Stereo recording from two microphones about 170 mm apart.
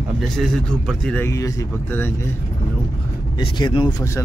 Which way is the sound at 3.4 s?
30° left (ahead or behind).